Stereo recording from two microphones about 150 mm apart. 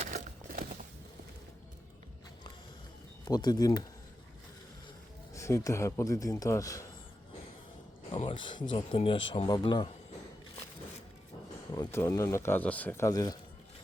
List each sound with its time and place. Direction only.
0.0 s a sound: 60° right (ahead or behind)
3.2 s a man's voice: 25° left (ahead or behind)
5.3 s a man's voice: 20° left (ahead or behind)
8.1 s speech: 35° left (ahead or behind)
11.7 s a man's voice: 20° left (ahead or behind)